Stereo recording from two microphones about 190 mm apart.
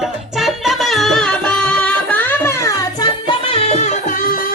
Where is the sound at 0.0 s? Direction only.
Centre (ahead or behind).